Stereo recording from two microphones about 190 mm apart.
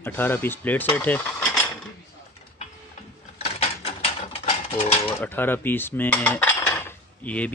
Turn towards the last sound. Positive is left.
turn(degrees=5)  # may be behind; listen again after turning